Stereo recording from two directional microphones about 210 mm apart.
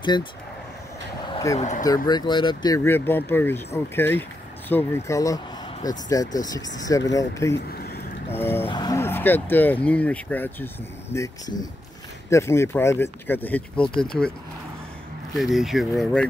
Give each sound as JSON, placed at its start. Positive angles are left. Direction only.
{"t": 0.0, "sound": "speech", "side_deg": 20}
{"t": 1.3, "sound": "a sound", "side_deg": 15}
{"t": 1.6, "sound": "speech", "side_deg": 35}
{"t": 2.0, "sound": "speech", "side_deg": 20}
{"t": 7.5, "sound": "a sound", "side_deg": 50}
{"t": 8.4, "sound": "speech", "side_deg": 10}
{"t": 15.3, "sound": "speech", "side_deg": 0}